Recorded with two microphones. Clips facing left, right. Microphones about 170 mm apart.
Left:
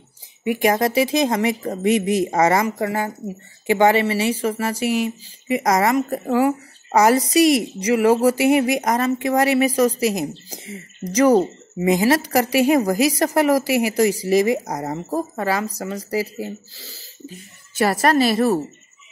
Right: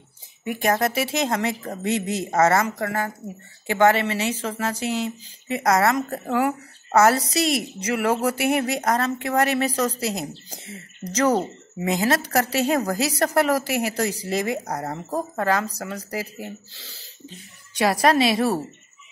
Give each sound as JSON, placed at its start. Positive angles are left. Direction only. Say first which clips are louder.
{"t": 0.4, "sound": "speech", "louder": "left 4 dB", "side_deg": 10}